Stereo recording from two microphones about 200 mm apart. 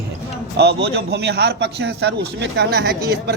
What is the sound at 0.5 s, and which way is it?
A man's voice, 55° right (ahead or behind).